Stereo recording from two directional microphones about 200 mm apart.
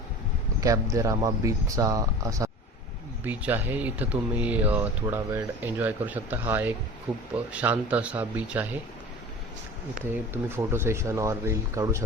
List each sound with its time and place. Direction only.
0.6 s speech: 15° right (ahead or behind)
10.3 s speech: 10° right (ahead or behind)